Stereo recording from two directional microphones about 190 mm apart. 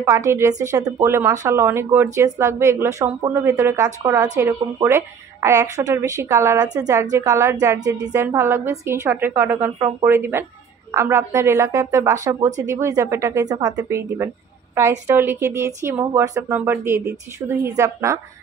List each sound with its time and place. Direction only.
0.0 s a woman's voice: 15° right (ahead or behind)